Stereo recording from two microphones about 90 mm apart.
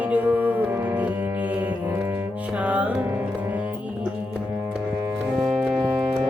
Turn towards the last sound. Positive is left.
turn(degrees=-5)  # may be behind; listen again after turning